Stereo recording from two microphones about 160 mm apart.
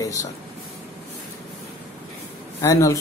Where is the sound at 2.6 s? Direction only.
20° left (ahead or behind).